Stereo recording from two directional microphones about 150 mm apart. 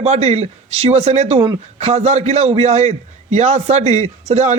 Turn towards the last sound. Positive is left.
turn(degrees=-45)  # may be behind; listen again after turning